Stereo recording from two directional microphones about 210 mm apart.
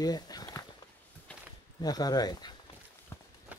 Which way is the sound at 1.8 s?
20° left (ahead or behind).